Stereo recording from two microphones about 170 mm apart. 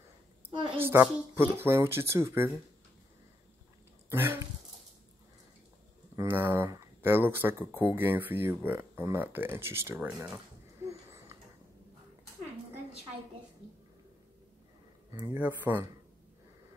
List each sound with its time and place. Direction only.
0.5 s a sound: 30° right (ahead or behind)
0.7 s speech: 15° right (ahead or behind)
4.1 s speech: 15° right (ahead or behind)
6.1 s speech: 15° right (ahead or behind)
10.9 s a sound: 15° right (ahead or behind)
15.3 s speech: 10° right (ahead or behind)